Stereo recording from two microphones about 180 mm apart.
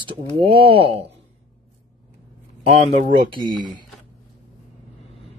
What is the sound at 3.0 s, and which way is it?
Speech, 50° right (ahead or behind).